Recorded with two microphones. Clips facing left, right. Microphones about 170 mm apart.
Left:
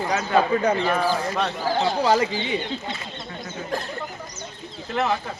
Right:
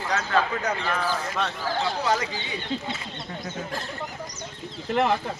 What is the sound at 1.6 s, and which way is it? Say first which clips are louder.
Speech: left 6 dB; 30° left (ahead or behind).